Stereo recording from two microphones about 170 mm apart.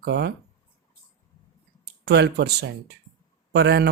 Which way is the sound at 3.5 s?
75° right (ahead or behind).